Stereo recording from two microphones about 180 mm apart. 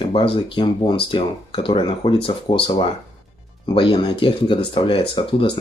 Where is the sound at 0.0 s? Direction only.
25° left (ahead or behind).